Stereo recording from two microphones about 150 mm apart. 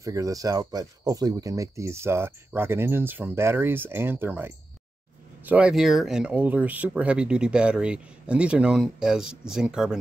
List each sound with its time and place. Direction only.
0.0 s speech: 20° right (ahead or behind); by 9.9 s 5° right (ahead or behind)